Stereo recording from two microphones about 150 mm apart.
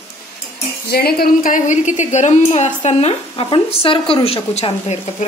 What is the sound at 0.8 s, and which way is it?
A woman's voice, 90° left.